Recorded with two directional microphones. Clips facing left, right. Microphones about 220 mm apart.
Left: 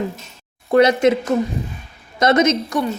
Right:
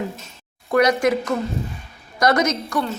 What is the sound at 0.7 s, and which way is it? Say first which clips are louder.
A woman's voice: left 4 dB; 25° left (ahead or behind).